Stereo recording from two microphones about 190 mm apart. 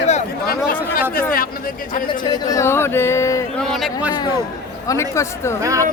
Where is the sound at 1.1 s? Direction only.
50° left (ahead or behind).